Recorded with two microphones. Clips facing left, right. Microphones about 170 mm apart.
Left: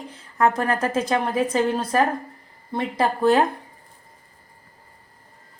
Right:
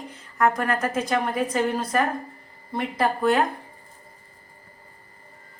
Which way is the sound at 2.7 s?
30° left (ahead or behind).